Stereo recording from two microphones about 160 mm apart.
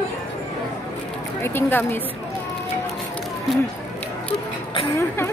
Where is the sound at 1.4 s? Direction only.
15° left (ahead or behind).